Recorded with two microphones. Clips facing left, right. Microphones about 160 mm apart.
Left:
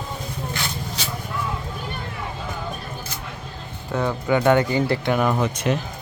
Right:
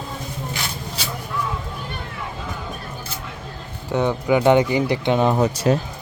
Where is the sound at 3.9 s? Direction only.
20° right (ahead or behind).